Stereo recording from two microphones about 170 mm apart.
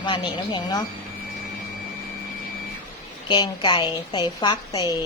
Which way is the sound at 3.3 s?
25° left (ahead or behind).